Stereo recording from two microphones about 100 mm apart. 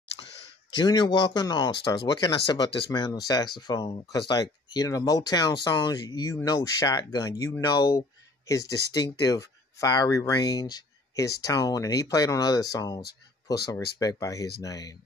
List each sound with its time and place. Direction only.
0.7 s speech: 45° left (ahead or behind)